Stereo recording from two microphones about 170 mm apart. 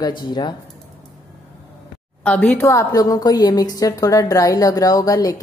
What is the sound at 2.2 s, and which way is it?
Speech, 5° left (ahead or behind).